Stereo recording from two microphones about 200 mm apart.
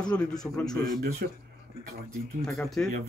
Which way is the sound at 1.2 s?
50° right (ahead or behind).